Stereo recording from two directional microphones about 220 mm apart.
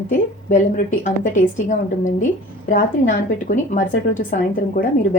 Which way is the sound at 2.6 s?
35° left (ahead or behind).